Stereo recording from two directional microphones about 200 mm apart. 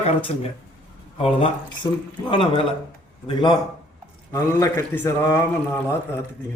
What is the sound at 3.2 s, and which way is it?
A man's voice, 20° left (ahead or behind).